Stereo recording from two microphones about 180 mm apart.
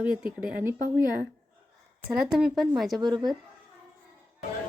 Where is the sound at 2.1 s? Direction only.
5° right (ahead or behind).